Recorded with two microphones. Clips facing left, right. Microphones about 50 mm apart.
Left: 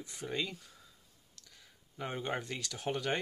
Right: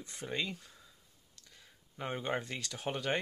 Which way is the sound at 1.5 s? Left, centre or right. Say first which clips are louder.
Right 1 dB; centre.